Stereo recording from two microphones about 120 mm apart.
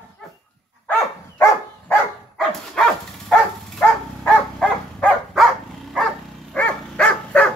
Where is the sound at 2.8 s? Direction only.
5° left (ahead or behind).